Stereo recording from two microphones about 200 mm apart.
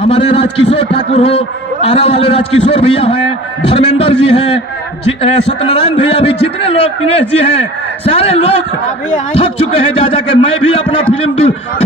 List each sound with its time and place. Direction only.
0.0 s a man's voice: 25° left (ahead or behind)